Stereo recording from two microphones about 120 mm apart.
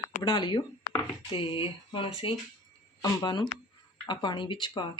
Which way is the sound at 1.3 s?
50° left (ahead or behind).